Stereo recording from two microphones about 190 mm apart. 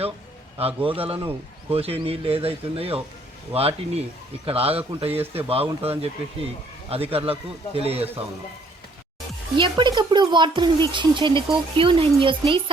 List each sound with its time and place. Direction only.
0.8 s speech: 30° right (ahead or behind)
9.6 s speech: 25° right (ahead or behind)